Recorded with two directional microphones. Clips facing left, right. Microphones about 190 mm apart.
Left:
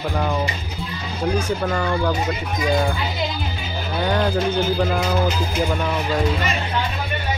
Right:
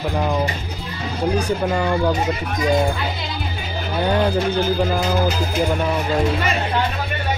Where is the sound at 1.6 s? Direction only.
15° right (ahead or behind).